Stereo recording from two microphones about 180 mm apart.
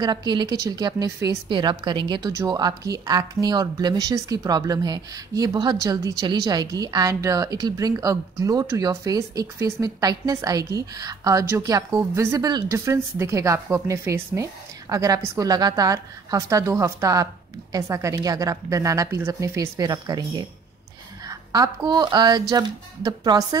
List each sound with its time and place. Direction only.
0.0 s a woman's voice: 25° right (ahead or behind)